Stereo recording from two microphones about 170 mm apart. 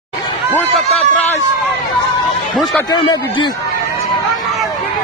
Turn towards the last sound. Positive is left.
turn(degrees=25)  # may be behind; listen again after turning